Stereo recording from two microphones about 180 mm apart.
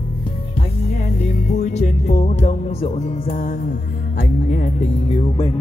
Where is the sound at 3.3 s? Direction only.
45° left (ahead or behind).